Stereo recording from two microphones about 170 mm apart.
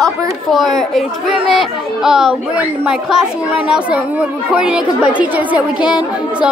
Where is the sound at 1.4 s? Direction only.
Centre (ahead or behind).